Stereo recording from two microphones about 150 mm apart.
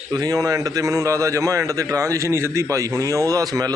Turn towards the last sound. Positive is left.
turn(degrees=-25)  # may be behind; listen again after turning